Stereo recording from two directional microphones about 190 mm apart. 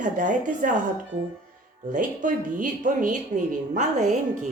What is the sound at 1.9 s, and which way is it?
A woman's voice, 45° right (ahead or behind).